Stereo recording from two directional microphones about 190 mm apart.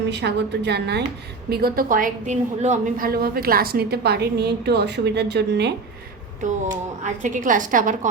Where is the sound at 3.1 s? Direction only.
50° right (ahead or behind).